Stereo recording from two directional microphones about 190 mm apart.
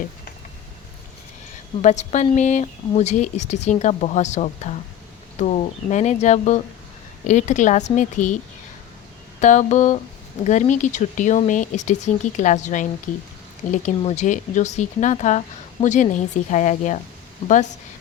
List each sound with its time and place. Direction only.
1.8 s speech: 40° left (ahead or behind)
9.4 s speech: 40° left (ahead or behind)